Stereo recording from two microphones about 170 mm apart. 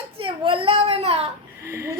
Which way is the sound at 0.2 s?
30° right (ahead or behind).